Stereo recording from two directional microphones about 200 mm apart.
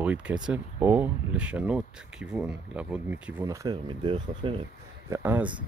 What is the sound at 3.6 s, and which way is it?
Speech, 25° right (ahead or behind).